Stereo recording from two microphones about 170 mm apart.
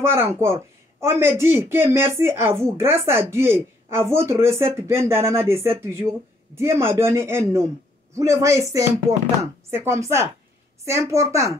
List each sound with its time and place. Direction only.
0.0 s speech: 15° right (ahead or behind)